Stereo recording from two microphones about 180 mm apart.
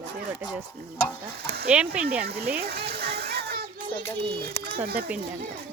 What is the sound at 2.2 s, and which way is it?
Children playing, 60° right (ahead or behind).